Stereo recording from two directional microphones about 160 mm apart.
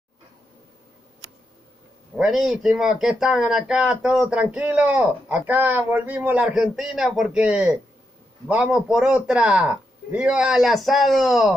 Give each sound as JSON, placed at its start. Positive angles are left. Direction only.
{"t": 2.1, "sound": "speech", "side_deg": -5}